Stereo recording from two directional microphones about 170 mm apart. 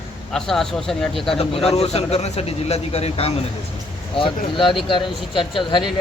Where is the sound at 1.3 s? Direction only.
35° left (ahead or behind).